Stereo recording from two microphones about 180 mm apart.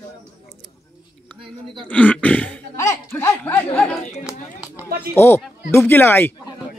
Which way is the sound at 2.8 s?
15° left (ahead or behind).